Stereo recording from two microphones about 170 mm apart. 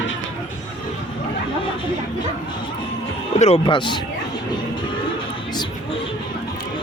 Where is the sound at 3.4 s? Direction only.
35° left (ahead or behind).